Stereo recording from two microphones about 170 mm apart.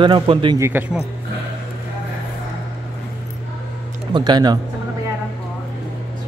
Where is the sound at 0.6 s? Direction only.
15° right (ahead or behind).